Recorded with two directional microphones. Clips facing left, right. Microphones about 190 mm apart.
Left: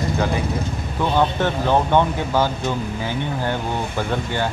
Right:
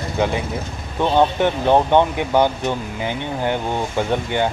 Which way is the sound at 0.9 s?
20° right (ahead or behind).